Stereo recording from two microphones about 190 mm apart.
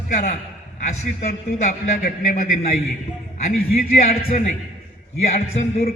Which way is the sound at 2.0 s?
45° left (ahead or behind).